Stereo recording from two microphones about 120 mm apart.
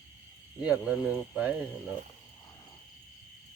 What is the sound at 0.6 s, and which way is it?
Speech, 10° right (ahead or behind).